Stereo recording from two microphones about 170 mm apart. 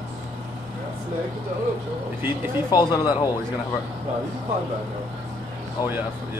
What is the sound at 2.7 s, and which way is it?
Speech, 25° left (ahead or behind).